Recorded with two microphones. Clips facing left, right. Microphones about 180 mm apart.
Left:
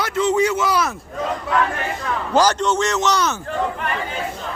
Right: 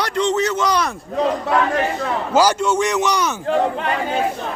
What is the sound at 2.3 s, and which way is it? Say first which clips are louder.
A man's voice: right 1 dB; 10° right (ahead or behind).